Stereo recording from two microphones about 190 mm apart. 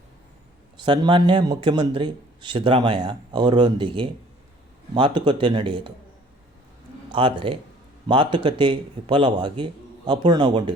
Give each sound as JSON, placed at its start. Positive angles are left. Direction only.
{"t": 0.8, "sound": "a man's voice", "side_deg": -25}
{"t": 7.1, "sound": "a man's voice", "side_deg": -25}